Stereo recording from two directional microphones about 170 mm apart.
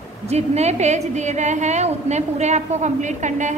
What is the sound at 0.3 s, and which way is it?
A woman's voice, 40° right (ahead or behind).